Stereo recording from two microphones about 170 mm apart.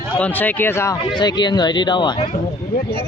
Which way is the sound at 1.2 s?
25° left (ahead or behind).